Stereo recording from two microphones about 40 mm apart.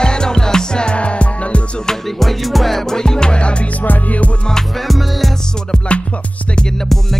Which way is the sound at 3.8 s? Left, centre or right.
Left.